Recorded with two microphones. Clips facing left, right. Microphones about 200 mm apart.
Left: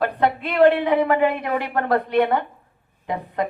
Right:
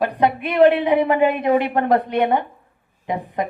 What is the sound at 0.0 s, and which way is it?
A woman's voice, 20° right (ahead or behind).